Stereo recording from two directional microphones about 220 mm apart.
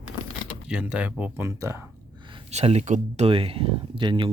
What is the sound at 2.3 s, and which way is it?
Speech, 30° right (ahead or behind).